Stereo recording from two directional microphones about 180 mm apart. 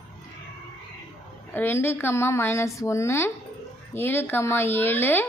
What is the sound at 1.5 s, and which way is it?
A woman's voice, 10° left (ahead or behind).